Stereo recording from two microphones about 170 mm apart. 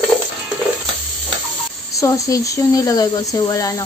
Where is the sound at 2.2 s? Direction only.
20° left (ahead or behind).